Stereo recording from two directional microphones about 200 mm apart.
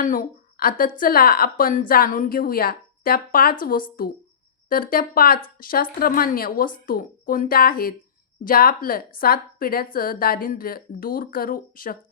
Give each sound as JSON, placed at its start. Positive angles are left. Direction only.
{"t": 0.0, "sound": "a woman's voice", "side_deg": 45}